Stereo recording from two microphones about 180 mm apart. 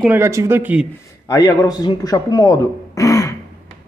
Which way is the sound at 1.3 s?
20° left (ahead or behind).